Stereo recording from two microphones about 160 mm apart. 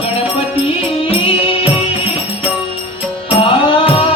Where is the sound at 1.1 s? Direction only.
35° left (ahead or behind).